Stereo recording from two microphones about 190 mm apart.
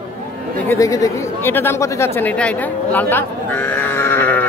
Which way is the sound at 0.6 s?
15° left (ahead or behind).